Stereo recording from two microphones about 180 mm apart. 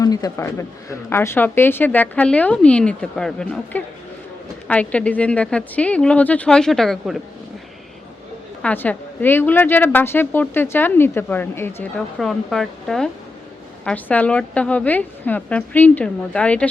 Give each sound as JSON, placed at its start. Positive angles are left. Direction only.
{"t": 0.0, "sound": "a man's voice", "side_deg": 20}
{"t": 8.6, "sound": "a woman's voice", "side_deg": 10}